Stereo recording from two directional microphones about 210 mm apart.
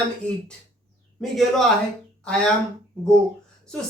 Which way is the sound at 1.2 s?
Centre (ahead or behind).